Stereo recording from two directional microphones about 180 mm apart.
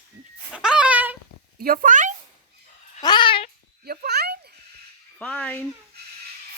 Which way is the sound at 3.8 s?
65° right (ahead or behind).